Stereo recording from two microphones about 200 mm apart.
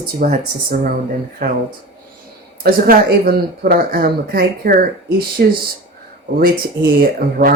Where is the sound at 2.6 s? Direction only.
50° right (ahead or behind).